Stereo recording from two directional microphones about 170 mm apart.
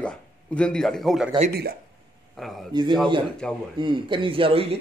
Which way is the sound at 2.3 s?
Centre (ahead or behind).